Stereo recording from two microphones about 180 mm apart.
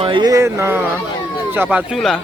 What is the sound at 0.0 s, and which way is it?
Speech, 25° right (ahead or behind).